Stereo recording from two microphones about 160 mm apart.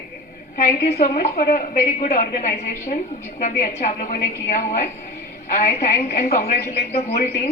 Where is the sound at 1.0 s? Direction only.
50° left (ahead or behind).